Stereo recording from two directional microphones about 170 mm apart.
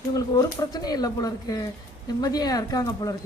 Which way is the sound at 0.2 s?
20° left (ahead or behind).